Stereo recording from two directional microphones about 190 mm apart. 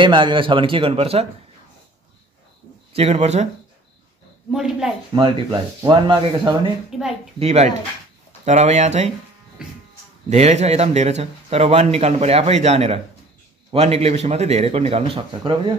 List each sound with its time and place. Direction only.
0.0 s speech: 25° right (ahead or behind)
2.9 s speech: 35° right (ahead or behind)
4.5 s speech: 5° right (ahead or behind)
5.1 s speech: 25° right (ahead or behind)
6.9 s speech: 5° right (ahead or behind)
7.3 s speech: 35° right (ahead or behind)
9.6 s music: 5° right (ahead or behind)
10.3 s speech: 35° right (ahead or behind)